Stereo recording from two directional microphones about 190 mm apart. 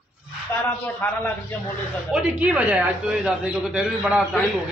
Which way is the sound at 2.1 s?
5° right (ahead or behind).